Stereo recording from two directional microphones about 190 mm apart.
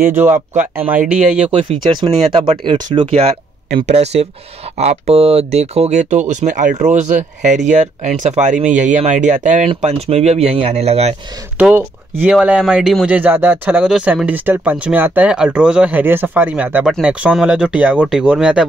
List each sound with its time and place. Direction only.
0.0 s speech: 10° right (ahead or behind)
1.9 s speech: 25° right (ahead or behind)
11.5 s speech: 10° right (ahead or behind)